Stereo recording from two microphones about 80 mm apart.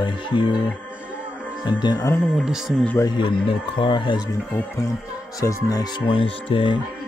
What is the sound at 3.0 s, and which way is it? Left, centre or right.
Speech, left.